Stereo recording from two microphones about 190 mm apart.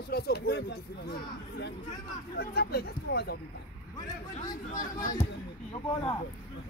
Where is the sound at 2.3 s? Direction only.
55° left (ahead or behind).